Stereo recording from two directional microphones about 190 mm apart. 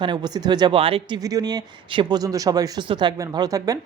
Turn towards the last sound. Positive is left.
turn(degrees=-20)  # may be behind; listen again after turning